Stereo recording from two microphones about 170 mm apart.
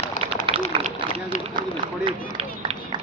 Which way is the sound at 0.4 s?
30° right (ahead or behind).